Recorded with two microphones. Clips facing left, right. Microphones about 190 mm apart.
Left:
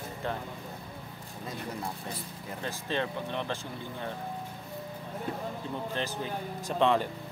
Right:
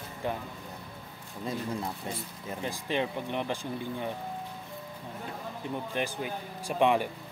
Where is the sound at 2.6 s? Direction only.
15° right (ahead or behind).